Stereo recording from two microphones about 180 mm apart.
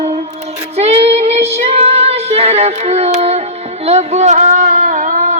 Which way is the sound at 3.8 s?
35° right (ahead or behind).